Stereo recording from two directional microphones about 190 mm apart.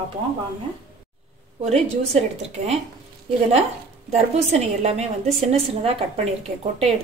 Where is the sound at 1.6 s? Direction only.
35° right (ahead or behind).